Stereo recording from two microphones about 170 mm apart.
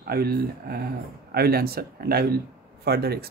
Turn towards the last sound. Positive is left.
turn(degrees=-65)  # may be behind; listen again after turning